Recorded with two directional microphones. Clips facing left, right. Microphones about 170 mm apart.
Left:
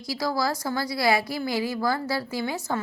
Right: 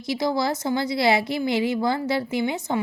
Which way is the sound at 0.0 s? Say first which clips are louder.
Right 3 dB; 20° right (ahead or behind).